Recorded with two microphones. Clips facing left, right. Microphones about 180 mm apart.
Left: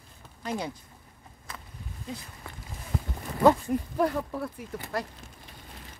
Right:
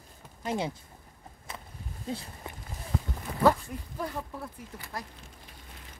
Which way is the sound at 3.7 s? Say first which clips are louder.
Left 10 dB; 70° left (ahead or behind).